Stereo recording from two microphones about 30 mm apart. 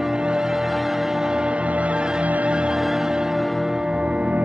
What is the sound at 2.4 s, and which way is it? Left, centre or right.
Music, right.